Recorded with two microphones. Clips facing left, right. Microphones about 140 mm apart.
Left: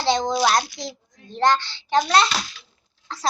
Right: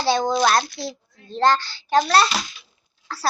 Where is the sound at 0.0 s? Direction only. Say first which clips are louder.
Right 1 dB; 20° left (ahead or behind).